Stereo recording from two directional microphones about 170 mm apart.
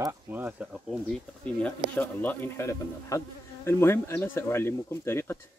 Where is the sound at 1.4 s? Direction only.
10° left (ahead or behind).